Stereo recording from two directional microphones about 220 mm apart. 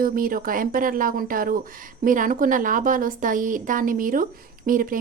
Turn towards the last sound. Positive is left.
turn(degrees=-40)  # may be behind; listen again after turning